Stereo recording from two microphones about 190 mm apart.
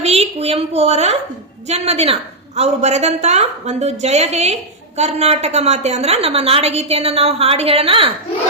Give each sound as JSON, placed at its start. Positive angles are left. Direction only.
{"t": 0.0, "sound": "a woman's voice", "side_deg": -35}